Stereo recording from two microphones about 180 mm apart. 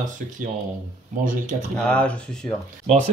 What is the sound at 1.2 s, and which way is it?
Speech, 45° right (ahead or behind).